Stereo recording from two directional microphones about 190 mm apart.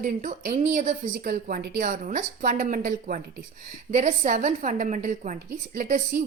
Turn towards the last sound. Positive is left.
turn(degrees=-40)  # may be behind; listen again after turning